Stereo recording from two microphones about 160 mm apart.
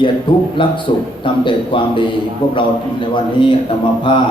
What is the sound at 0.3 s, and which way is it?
A man's voice, 30° left (ahead or behind).